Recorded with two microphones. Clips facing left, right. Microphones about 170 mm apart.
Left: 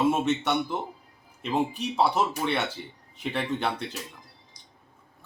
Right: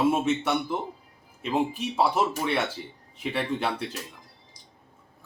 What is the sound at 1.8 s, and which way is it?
Speech, 5° right (ahead or behind).